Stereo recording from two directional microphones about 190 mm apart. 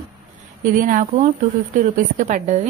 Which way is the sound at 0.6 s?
45° right (ahead or behind).